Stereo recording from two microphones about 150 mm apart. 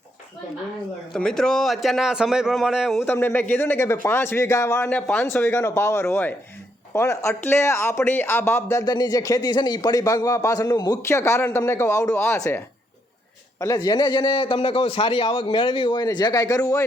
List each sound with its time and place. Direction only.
1.1 s a man's voice: 5° left (ahead or behind)
3.0 s speech: 15° left (ahead or behind)
4.9 s a man's voice: 5° left (ahead or behind); by 16.8 s 25° left (ahead or behind)